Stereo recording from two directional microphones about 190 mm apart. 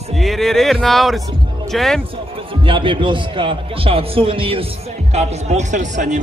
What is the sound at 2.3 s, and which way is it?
A man's voice, 25° right (ahead or behind).